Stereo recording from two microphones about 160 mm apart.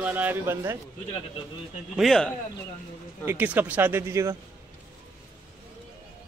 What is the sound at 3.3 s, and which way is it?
A man's voice, 10° right (ahead or behind).